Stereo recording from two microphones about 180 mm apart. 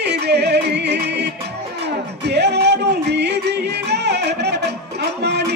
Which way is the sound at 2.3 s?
70° right (ahead or behind).